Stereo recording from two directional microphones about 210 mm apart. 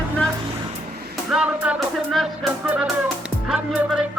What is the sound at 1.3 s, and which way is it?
Music, 5° right (ahead or behind).